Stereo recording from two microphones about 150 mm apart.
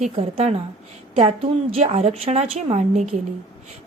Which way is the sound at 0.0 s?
45° right (ahead or behind).